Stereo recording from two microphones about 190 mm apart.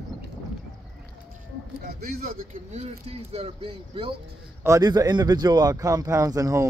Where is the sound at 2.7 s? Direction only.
35° right (ahead or behind).